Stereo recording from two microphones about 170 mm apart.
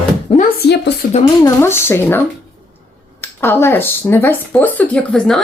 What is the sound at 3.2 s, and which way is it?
Speech, 15° left (ahead or behind).